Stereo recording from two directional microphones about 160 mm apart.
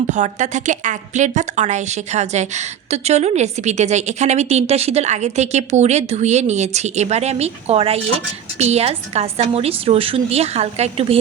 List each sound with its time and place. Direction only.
0.1 s a woman's voice: 50° right (ahead or behind)